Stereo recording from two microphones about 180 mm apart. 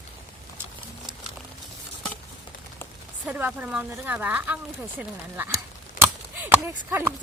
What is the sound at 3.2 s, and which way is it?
A woman's voice, 10° right (ahead or behind).